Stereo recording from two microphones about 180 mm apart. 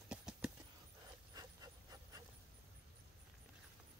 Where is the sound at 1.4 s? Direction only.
20° right (ahead or behind).